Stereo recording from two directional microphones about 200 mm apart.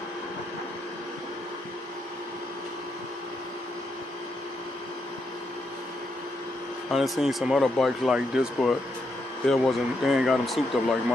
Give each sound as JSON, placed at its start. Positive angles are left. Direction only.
{"t": 6.9, "sound": "speech", "side_deg": 0}